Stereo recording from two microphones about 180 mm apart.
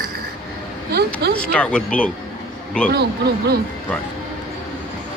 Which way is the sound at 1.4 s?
5° left (ahead or behind).